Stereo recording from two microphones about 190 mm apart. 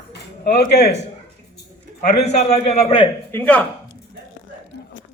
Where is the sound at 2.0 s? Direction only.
35° left (ahead or behind).